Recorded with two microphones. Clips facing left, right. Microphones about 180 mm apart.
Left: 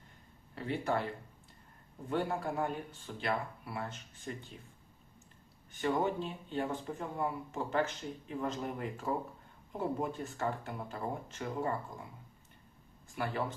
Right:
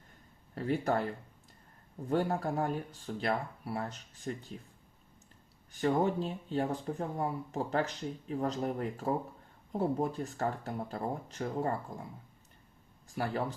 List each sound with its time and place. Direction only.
0.5 s speech: 40° right (ahead or behind)
2.0 s speech: 40° right (ahead or behind)
5.7 s speech: 40° right (ahead or behind)
13.1 s speech: 35° right (ahead or behind)